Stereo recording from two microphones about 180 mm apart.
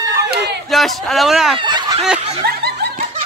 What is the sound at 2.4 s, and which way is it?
Laughter, 65° right (ahead or behind).